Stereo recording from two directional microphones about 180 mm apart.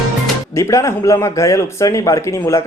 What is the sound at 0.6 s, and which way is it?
Speech, 15° left (ahead or behind).